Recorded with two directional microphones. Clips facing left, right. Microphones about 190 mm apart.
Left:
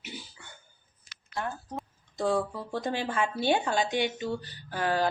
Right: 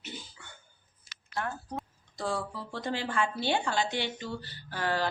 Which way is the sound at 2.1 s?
20° left (ahead or behind).